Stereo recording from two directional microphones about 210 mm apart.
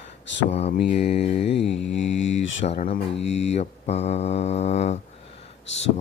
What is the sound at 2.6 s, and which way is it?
Mantra, 35° left (ahead or behind).